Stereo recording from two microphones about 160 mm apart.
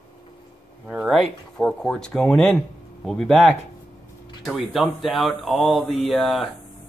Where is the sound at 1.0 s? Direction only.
Centre (ahead or behind).